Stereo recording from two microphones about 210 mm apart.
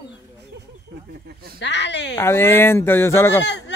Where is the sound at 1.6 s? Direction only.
55° left (ahead or behind).